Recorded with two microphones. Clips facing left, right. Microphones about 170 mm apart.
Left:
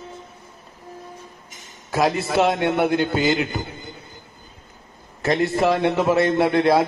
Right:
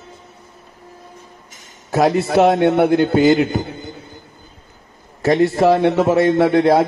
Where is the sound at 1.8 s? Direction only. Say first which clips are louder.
Right 5 dB; 45° right (ahead or behind).